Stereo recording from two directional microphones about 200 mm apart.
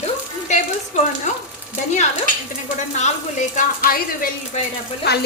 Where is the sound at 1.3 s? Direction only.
35° left (ahead or behind).